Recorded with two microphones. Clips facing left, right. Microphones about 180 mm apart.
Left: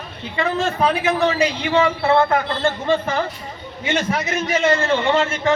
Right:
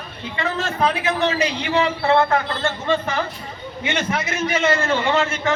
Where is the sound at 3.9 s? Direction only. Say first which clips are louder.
Left 3 dB; 40° left (ahead or behind).